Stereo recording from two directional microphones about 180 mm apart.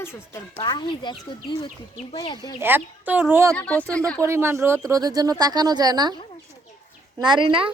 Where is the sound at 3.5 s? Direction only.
10° left (ahead or behind).